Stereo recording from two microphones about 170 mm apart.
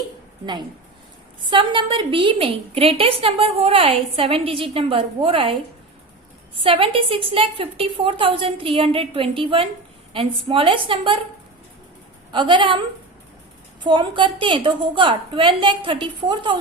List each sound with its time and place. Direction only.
1.5 s a woman's voice: 30° right (ahead or behind)
6.6 s a woman's voice: 35° right (ahead or behind)
12.3 s a woman's voice: 30° right (ahead or behind)
13.8 s a woman's voice: 30° right (ahead or behind)